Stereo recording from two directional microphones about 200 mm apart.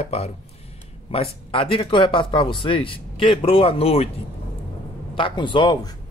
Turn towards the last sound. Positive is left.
turn(degrees=20)  # may be behind; listen again after turning